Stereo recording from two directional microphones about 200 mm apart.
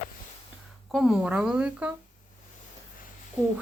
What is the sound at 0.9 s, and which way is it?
Speech, 5° right (ahead or behind).